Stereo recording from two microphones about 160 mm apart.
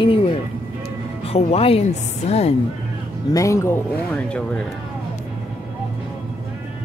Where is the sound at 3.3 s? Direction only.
20° left (ahead or behind).